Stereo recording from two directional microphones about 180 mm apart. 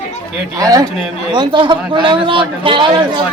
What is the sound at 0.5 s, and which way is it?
A man's voice, 20° right (ahead or behind).